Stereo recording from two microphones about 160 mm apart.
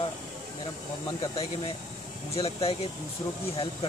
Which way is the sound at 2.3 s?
35° left (ahead or behind).